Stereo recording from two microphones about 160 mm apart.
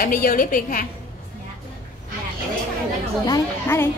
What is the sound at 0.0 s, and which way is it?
Speech, 60° left (ahead or behind).